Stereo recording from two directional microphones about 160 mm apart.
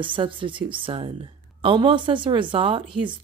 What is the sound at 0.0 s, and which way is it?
Speech, 30° right (ahead or behind).